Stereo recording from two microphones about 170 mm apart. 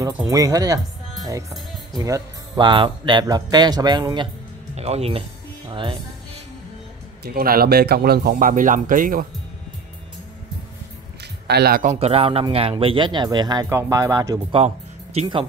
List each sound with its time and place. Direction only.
0.0 s speech: 20° right (ahead or behind)
2.0 s speech: 20° right (ahead or behind)
4.7 s speech: 40° right (ahead or behind)
5.7 s music: 30° right (ahead or behind)
7.2 s speech: 60° right (ahead or behind)
11.4 s speech: 70° right (ahead or behind)
11.9 s speech: 35° right (ahead or behind)